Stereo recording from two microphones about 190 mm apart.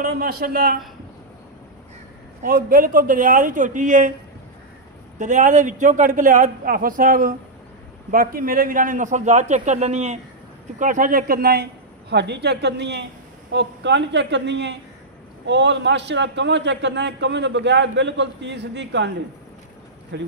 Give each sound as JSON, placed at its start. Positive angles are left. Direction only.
{"t": 0.0, "sound": "a man's voice", "side_deg": -50}
{"t": 2.4, "sound": "a man's voice", "side_deg": -50}
{"t": 5.2, "sound": "a man's voice", "side_deg": -40}